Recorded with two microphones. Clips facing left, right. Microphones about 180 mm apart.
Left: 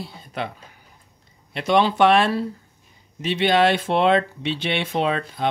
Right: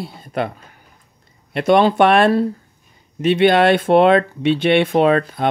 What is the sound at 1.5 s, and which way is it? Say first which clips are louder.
Speech: right 6 dB; 55° right (ahead or behind).